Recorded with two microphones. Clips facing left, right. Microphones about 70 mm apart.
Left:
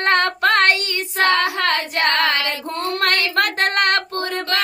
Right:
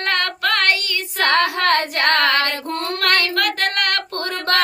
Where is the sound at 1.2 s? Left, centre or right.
Right.